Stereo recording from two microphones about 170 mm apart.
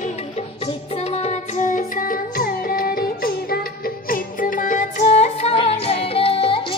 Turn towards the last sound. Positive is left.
turn(degrees=30)  # may be behind; listen again after turning